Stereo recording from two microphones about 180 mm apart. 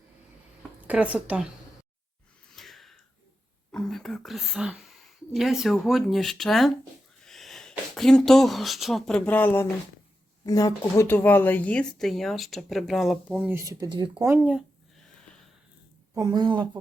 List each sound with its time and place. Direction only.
0.9 s a woman's voice: 10° right (ahead or behind)
2.6 s a sound: centre (ahead or behind)
3.7 s whispering: 5° left (ahead or behind)
5.3 s speech: centre (ahead or behind)
13.7 s speech: 20° right (ahead or behind)
14.3 s a sound: 10° right (ahead or behind)
16.1 s speech: 20° right (ahead or behind)